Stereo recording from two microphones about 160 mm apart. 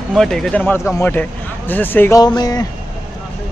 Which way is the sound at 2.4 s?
25° left (ahead or behind).